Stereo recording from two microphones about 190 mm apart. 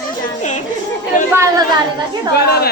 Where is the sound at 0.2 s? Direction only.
40° left (ahead or behind).